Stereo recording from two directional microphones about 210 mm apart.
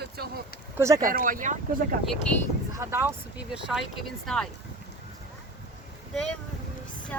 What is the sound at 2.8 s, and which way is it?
Speech, 10° right (ahead or behind).